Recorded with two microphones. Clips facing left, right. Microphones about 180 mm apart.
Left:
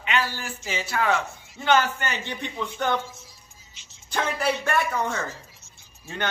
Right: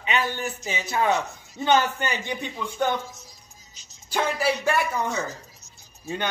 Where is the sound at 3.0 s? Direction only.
40° right (ahead or behind).